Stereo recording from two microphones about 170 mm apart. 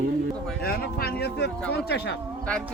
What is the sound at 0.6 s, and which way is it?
Speech, 65° left (ahead or behind).